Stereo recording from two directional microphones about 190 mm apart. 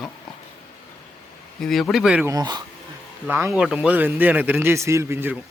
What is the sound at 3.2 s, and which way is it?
A man's voice, 10° right (ahead or behind).